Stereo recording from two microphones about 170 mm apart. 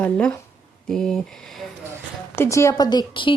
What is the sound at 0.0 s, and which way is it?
A woman's voice, 5° left (ahead or behind).